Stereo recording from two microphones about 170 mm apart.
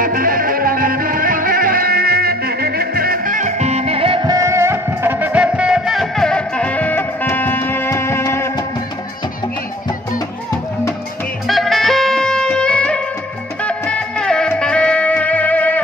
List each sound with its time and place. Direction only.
0.0 s music: 55° right (ahead or behind); by 8.5 s 15° left (ahead or behind)
11.4 s music: centre (ahead or behind)